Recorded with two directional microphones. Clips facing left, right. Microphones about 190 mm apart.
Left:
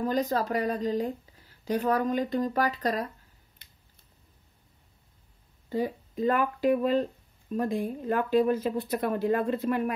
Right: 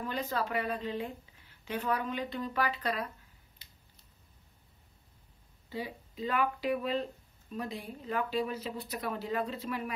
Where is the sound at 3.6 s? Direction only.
55° left (ahead or behind).